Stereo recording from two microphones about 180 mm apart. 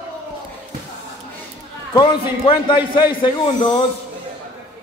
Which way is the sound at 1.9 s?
25° left (ahead or behind).